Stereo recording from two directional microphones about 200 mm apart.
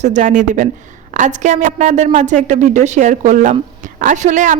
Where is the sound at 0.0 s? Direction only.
35° right (ahead or behind).